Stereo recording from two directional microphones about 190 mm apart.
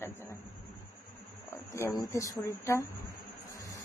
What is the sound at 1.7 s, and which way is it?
A woman's voice, 15° left (ahead or behind).